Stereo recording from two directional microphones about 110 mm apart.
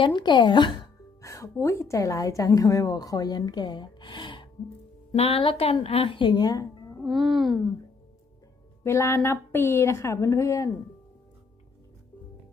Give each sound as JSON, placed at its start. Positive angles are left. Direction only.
{"t": 0.0, "sound": "speech", "side_deg": 45}
{"t": 1.2, "sound": "a woman's voice", "side_deg": 25}
{"t": 5.1, "sound": "a woman's voice", "side_deg": 65}
{"t": 7.0, "sound": "speech", "side_deg": 0}
{"t": 8.8, "sound": "a woman's voice", "side_deg": 25}